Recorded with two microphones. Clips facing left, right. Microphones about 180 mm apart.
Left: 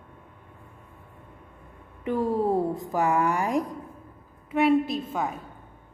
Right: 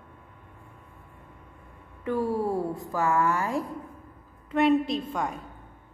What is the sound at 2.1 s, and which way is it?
A woman's voice, 20° left (ahead or behind).